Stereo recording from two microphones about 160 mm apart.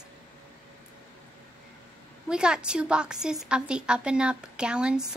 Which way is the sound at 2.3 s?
5° right (ahead or behind).